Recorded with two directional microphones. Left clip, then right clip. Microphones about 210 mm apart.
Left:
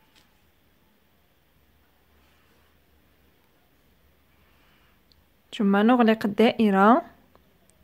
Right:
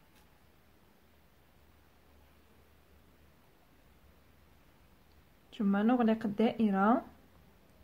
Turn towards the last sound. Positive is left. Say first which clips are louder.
# left 11 dB
turn(degrees=45)  # may be behind; listen again after turning